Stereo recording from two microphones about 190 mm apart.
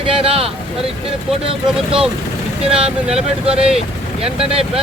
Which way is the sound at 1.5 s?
30° right (ahead or behind).